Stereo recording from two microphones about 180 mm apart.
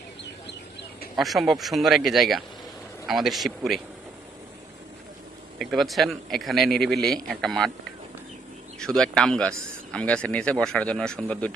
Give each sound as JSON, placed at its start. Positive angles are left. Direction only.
{"t": 1.1, "sound": "speech", "side_deg": 0}
{"t": 5.5, "sound": "speech", "side_deg": 0}
{"t": 8.8, "sound": "speech", "side_deg": 5}